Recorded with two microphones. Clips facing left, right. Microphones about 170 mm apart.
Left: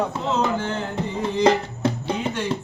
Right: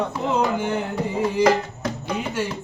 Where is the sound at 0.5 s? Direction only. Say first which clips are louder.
Right 2 dB; 15° right (ahead or behind).